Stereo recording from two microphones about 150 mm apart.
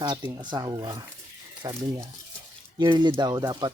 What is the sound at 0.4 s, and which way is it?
Speech, 30° right (ahead or behind).